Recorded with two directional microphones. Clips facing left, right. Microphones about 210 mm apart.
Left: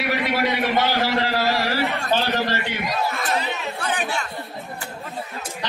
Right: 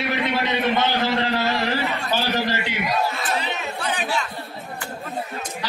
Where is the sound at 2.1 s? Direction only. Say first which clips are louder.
Even; 10° right (ahead or behind).